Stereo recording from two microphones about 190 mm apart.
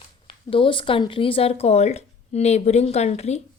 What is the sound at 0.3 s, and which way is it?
A woman's voice, 25° left (ahead or behind).